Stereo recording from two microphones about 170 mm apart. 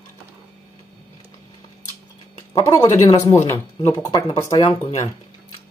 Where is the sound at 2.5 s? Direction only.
20° left (ahead or behind).